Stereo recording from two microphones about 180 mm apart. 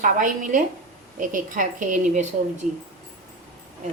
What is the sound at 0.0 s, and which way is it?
A woman's voice, 50° right (ahead or behind).